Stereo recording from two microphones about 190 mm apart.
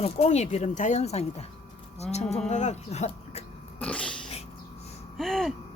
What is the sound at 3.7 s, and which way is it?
Cat, 5° left (ahead or behind).